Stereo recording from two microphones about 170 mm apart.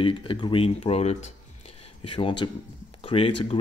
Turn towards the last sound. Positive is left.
turn(degrees=35)  # may be behind; listen again after turning